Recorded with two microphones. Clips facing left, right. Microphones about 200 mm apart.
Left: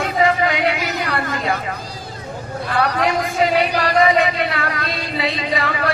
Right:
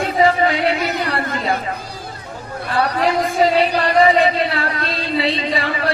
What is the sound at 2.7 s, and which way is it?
Speech, 30° right (ahead or behind).